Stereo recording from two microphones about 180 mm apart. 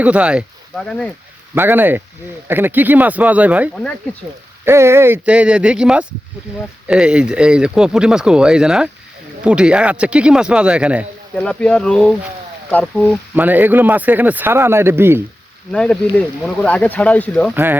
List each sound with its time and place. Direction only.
0.0 s speech: 5° right (ahead or behind)
1.5 s speech: 10° right (ahead or behind)
11.3 s speech: 5° left (ahead or behind)
13.3 s speech: 10° right (ahead or behind)
15.7 s speech: 5° left (ahead or behind)
17.5 s speech: 10° right (ahead or behind)